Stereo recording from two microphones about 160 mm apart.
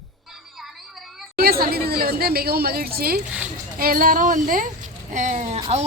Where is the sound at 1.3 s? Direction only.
70° right (ahead or behind).